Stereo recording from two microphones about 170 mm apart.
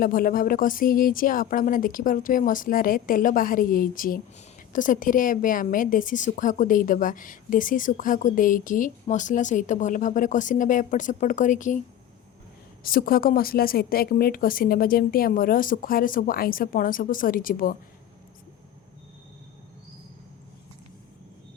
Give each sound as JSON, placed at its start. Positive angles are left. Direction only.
{"t": 0.0, "sound": "a woman's voice", "side_deg": 55}
{"t": 12.8, "sound": "speech", "side_deg": 55}